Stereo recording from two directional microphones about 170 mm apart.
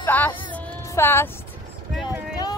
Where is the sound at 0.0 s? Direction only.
10° left (ahead or behind).